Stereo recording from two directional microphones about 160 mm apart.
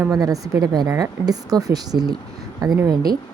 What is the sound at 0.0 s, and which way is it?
A woman's voice, 20° right (ahead or behind).